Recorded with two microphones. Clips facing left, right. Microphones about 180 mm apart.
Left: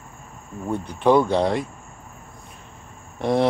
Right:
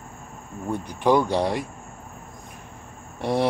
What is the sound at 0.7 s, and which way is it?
Speech, 10° right (ahead or behind).